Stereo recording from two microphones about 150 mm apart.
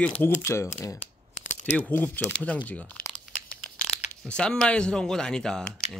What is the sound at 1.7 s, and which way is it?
Speech, 10° left (ahead or behind).